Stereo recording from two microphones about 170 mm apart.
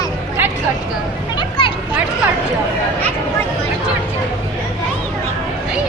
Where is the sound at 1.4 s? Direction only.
30° left (ahead or behind).